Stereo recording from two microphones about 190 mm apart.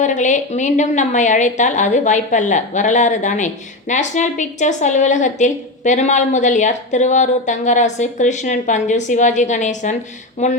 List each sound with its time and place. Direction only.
0.0 s a woman's voice: 40° left (ahead or behind)